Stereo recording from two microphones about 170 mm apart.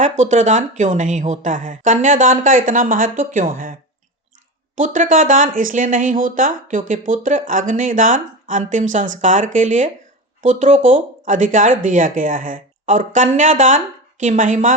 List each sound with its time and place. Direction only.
0.0 s speech: 45° right (ahead or behind)